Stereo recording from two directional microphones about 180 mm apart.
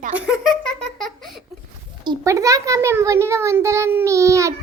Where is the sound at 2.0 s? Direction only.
20° right (ahead or behind).